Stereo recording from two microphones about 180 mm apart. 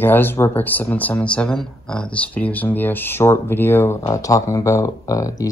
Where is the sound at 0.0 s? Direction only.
10° left (ahead or behind).